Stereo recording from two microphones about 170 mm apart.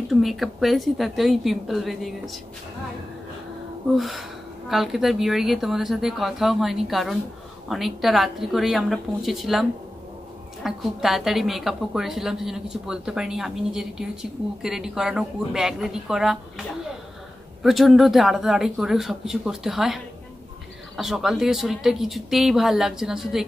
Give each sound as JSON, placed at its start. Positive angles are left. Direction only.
{"t": 0.1, "sound": "a woman's voice", "side_deg": 0}
{"t": 3.9, "sound": "a woman's voice", "side_deg": 0}
{"t": 17.6, "sound": "a woman's voice", "side_deg": 0}